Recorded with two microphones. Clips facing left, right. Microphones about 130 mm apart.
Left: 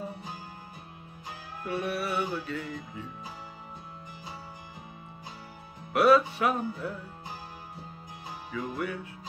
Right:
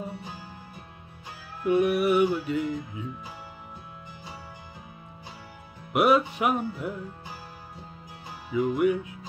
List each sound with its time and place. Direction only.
1.6 s music: 15° right (ahead or behind)
5.9 s music: 20° right (ahead or behind)
8.5 s music: 15° right (ahead or behind)